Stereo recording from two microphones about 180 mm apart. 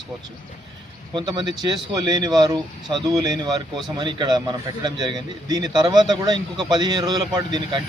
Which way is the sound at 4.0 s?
25° right (ahead or behind).